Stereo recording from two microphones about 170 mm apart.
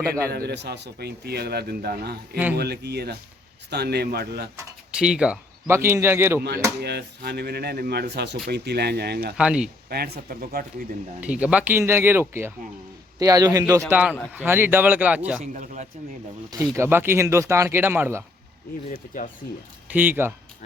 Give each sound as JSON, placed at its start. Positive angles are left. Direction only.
{"t": 0.3, "sound": "a man's voice", "side_deg": -70}
{"t": 4.5, "sound": "speech", "side_deg": -5}
{"t": 6.8, "sound": "a man's voice", "side_deg": -70}
{"t": 8.4, "sound": "a man's voice", "side_deg": -75}
{"t": 9.4, "sound": "speech", "side_deg": -5}
{"t": 9.9, "sound": "speech", "side_deg": -65}
{"t": 11.2, "sound": "a man's voice", "side_deg": -5}
{"t": 13.9, "sound": "speech", "side_deg": -10}
{"t": 15.4, "sound": "a man's voice", "side_deg": -45}
{"t": 16.5, "sound": "speech", "side_deg": -15}
{"t": 18.9, "sound": "speech", "side_deg": 50}
{"t": 19.9, "sound": "speech", "side_deg": -10}